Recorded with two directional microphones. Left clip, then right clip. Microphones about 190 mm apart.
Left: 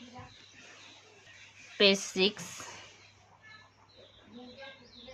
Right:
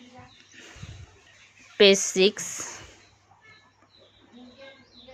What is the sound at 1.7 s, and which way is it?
Speech, 40° right (ahead or behind).